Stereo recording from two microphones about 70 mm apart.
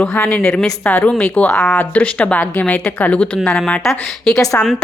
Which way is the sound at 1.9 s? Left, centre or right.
Centre.